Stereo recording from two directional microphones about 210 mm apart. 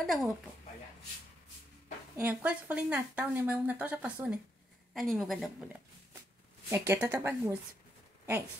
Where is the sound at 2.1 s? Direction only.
5° right (ahead or behind).